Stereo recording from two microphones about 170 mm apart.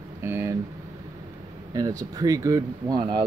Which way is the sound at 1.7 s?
20° right (ahead or behind).